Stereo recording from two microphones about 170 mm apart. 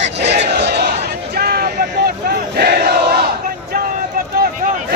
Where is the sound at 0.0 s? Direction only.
85° right.